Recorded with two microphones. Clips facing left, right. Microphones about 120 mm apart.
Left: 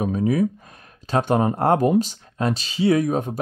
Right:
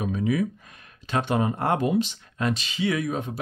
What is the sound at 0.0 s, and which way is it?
Speech, 40° left (ahead or behind).